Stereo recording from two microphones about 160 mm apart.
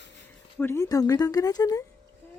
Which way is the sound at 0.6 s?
15° left (ahead or behind).